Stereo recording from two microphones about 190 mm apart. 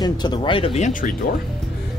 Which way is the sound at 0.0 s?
25° left (ahead or behind).